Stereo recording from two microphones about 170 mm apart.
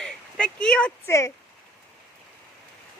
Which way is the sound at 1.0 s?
15° left (ahead or behind).